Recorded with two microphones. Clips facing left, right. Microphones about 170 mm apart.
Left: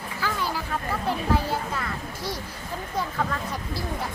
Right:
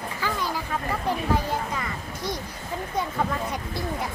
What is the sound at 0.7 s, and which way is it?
Speech, 10° right (ahead or behind).